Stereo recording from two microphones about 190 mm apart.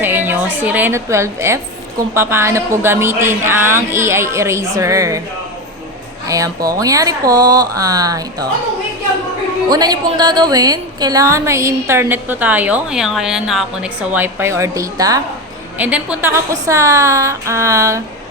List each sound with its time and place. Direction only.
0.0 s a sound: 10° right (ahead or behind)
0.6 s a woman's voice: 10° right (ahead or behind)
6.2 s speech: 15° right (ahead or behind)
9.6 s a woman's voice: 20° right (ahead or behind)
15.8 s a woman's voice: 10° right (ahead or behind)